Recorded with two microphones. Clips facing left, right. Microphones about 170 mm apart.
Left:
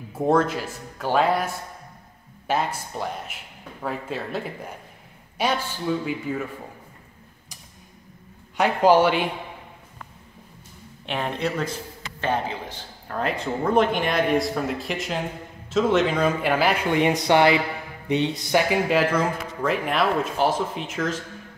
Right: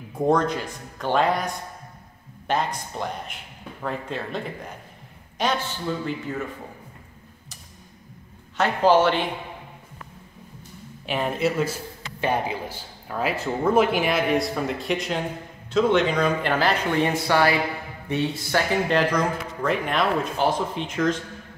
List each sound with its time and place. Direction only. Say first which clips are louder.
0.1 s a man's voice: even; 5° left (ahead or behind)
8.5 s speech: left 1 dB; 15° left (ahead or behind)
11.1 s a man's voice: right 3 dB; 5° right (ahead or behind); by 18.8 s 15° left (ahead or behind)
18.9 s a man's voice: left 1 dB; 5° left (ahead or behind)